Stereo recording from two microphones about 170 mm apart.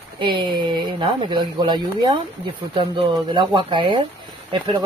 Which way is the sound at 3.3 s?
30° right (ahead or behind).